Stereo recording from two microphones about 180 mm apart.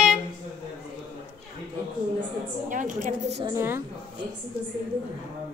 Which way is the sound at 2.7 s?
45° right (ahead or behind).